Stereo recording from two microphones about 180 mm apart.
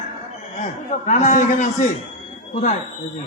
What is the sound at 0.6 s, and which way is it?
A man's voice, 40° left (ahead or behind).